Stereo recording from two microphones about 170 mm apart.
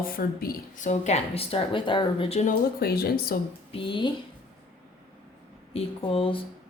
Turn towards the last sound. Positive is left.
turn(degrees=30)  # may be behind; listen again after turning